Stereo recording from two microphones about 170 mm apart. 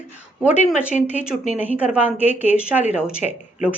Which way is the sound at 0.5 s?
45° left (ahead or behind).